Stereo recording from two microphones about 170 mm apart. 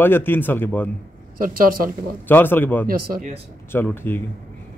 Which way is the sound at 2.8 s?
60° right (ahead or behind).